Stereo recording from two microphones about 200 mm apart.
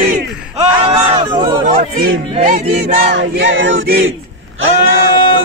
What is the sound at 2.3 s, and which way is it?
Battle cry, 35° right (ahead or behind).